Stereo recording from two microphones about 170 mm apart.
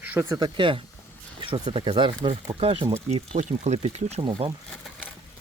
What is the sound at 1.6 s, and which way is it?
Speech, 30° right (ahead or behind).